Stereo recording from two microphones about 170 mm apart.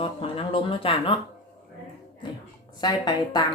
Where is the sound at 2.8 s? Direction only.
25° left (ahead or behind).